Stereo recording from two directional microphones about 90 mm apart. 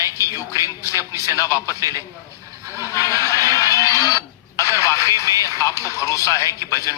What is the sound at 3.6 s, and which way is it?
Radio, 35° left (ahead or behind).